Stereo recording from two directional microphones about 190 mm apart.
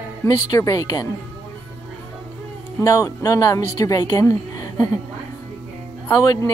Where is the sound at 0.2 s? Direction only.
15° left (ahead or behind).